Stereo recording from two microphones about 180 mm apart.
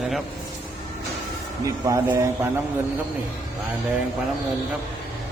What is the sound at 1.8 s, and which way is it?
Speech, 20° right (ahead or behind).